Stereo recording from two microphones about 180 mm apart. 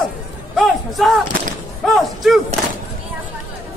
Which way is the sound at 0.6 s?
Centre (ahead or behind).